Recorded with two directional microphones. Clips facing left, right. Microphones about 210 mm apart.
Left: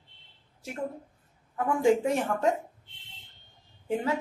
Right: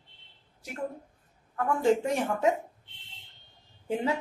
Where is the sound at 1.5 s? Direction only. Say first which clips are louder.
Left 1 dB; 15° left (ahead or behind); by 2.5 s centre (ahead or behind).